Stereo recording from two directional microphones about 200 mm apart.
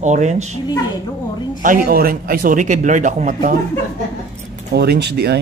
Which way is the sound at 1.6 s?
45° right (ahead or behind).